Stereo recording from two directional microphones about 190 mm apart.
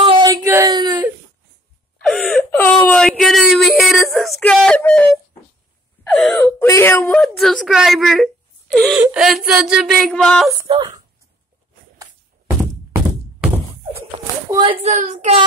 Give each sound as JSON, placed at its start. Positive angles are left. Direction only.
{"t": 0.0, "sound": "a sound", "side_deg": -30}
{"t": 0.3, "sound": "a sound", "side_deg": -15}
{"t": 2.0, "sound": "whimper", "side_deg": 5}
{"t": 6.1, "sound": "wail", "side_deg": 5}
{"t": 7.2, "sound": "a woman's voice", "side_deg": 0}
{"t": 8.7, "sound": "wail", "side_deg": 5}
{"t": 9.0, "sound": "a sound", "side_deg": -5}
{"t": 10.7, "sound": "speech", "side_deg": -25}
{"t": 14.5, "sound": "speech", "side_deg": -25}